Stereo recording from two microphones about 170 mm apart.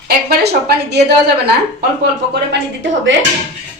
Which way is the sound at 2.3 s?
90° right.